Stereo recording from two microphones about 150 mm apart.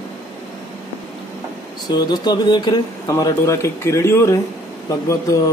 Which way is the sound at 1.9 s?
25° left (ahead or behind).